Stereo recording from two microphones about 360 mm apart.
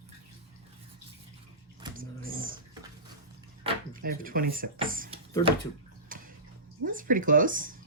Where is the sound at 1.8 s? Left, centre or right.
Centre.